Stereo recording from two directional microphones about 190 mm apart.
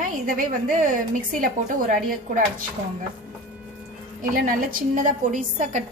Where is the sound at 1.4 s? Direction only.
45° right (ahead or behind).